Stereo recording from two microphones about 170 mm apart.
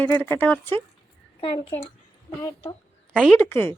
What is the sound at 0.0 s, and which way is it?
Speech, 10° left (ahead or behind).